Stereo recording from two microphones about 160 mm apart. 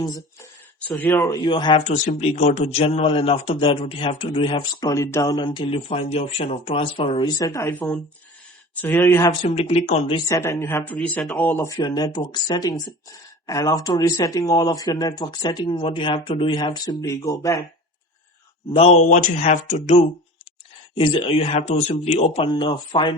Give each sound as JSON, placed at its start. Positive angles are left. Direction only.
{"t": 0.9, "sound": "speech", "side_deg": 10}
{"t": 1.3, "sound": "speech", "side_deg": 30}
{"t": 1.9, "sound": "a man's voice", "side_deg": 45}
{"t": 9.4, "sound": "a man's voice", "side_deg": 45}
{"t": 10.2, "sound": "speech", "side_deg": 20}
{"t": 11.8, "sound": "speech", "side_deg": 25}
{"t": 18.7, "sound": "speech", "side_deg": 40}
{"t": 20.9, "sound": "a man's voice", "side_deg": 30}
{"t": 22.5, "sound": "speech", "side_deg": 30}